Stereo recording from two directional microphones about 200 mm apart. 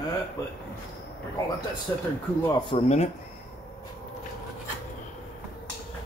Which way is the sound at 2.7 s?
35° left (ahead or behind).